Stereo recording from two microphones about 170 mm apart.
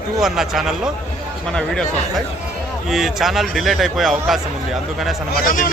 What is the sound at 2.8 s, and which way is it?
A man's voice, centre (ahead or behind).